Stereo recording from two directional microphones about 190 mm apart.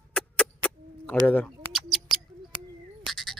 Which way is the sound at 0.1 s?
5° left (ahead or behind).